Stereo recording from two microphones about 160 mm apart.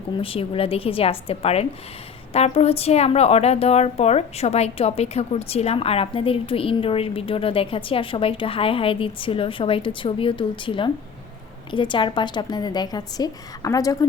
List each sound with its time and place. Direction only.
0.2 s a woman's voice: 35° left (ahead or behind)